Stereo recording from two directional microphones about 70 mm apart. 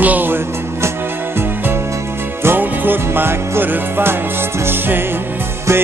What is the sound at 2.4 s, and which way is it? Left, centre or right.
Music, right.